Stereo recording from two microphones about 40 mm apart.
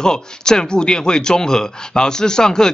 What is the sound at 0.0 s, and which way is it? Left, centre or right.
Speech, centre.